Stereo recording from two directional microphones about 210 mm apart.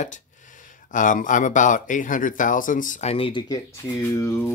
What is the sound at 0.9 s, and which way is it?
Speech, 40° left (ahead or behind).